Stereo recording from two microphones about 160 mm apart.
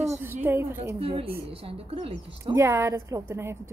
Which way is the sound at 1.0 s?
35° right (ahead or behind).